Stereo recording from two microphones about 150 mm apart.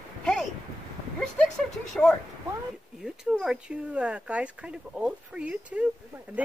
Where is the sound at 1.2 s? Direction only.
5° left (ahead or behind).